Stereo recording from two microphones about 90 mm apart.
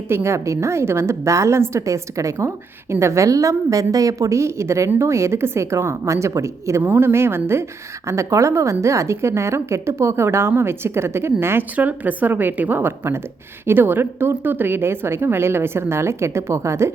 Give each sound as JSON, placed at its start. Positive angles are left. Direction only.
{"t": 0.1, "sound": "a woman's voice", "side_deg": -30}